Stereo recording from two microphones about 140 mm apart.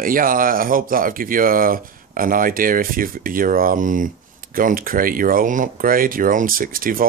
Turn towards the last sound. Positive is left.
turn(degrees=-90)